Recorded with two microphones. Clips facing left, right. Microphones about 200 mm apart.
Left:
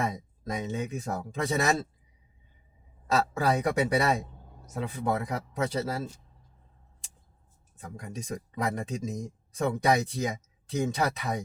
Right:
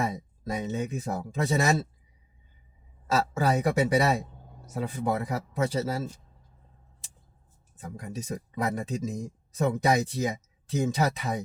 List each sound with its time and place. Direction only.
0.0 s speech: 5° right (ahead or behind)
3.6 s speech: 5° right (ahead or behind)
7.8 s speech: 5° right (ahead or behind)